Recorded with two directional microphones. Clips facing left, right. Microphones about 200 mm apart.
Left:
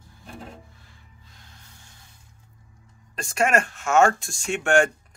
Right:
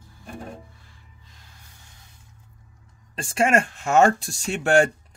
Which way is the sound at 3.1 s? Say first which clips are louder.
Right 2 dB; 30° right (ahead or behind).